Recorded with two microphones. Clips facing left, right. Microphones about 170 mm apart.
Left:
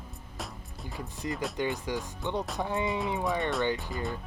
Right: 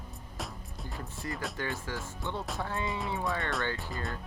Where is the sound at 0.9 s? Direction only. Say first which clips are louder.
Left 4 dB; 20° left (ahead or behind).